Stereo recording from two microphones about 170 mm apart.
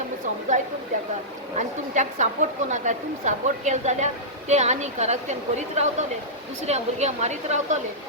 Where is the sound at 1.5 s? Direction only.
45° right (ahead or behind).